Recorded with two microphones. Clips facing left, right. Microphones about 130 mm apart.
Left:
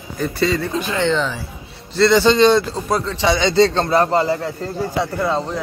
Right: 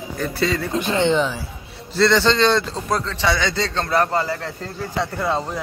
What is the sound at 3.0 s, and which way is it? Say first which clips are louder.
A man's voice: left 4 dB; 25° left (ahead or behind).